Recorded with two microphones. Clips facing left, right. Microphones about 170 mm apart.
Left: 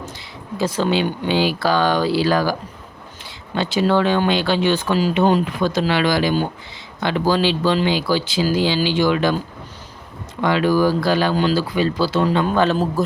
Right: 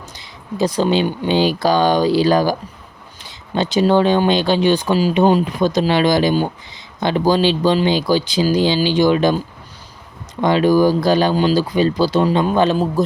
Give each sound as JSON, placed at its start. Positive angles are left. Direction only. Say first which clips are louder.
{"t": 0.5, "sound": "speech", "louder": "right 3 dB", "side_deg": -15}
{"t": 10.4, "sound": "speech", "louder": "right 3 dB", "side_deg": -20}